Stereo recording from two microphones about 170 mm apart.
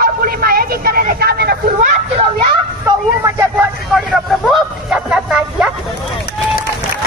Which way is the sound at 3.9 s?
Centre (ahead or behind).